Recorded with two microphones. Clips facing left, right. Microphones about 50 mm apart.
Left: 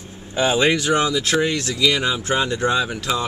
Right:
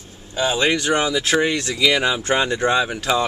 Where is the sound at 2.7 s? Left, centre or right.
Centre.